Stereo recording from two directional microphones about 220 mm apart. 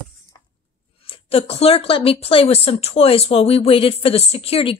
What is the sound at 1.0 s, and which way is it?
Speech, 25° left (ahead or behind).